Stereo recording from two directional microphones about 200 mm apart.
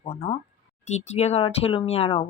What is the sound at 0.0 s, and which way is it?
Speech, 30° left (ahead or behind).